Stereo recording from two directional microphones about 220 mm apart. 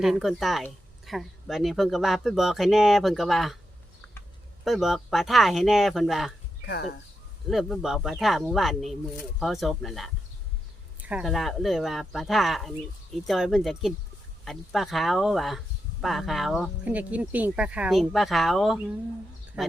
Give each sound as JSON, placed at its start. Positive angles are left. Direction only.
{"t": 0.0, "sound": "speech", "side_deg": 0}
{"t": 4.6, "sound": "speech", "side_deg": 0}
{"t": 6.7, "sound": "speech", "side_deg": 45}
{"t": 7.5, "sound": "speech", "side_deg": 0}